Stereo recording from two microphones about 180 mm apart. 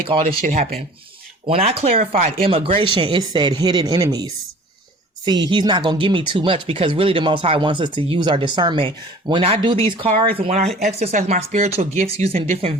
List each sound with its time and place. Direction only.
0.1 s speech: 30° right (ahead or behind)